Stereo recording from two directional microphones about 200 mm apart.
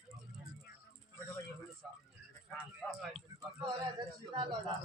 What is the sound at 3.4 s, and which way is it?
A man's voice, 20° right (ahead or behind).